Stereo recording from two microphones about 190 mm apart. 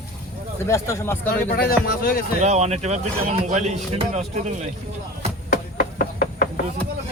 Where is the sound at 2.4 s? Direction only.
35° right (ahead or behind).